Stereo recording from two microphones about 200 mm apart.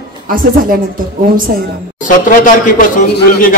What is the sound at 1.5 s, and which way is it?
Speech, 50° right (ahead or behind).